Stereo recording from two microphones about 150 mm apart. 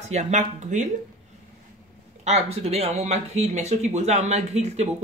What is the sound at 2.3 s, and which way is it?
Speech, 45° right (ahead or behind).